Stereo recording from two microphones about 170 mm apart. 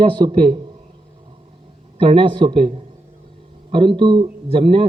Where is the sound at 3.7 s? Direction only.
30° right (ahead or behind).